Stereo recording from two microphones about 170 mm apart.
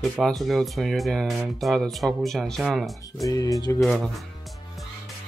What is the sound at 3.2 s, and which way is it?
Speech, 20° left (ahead or behind).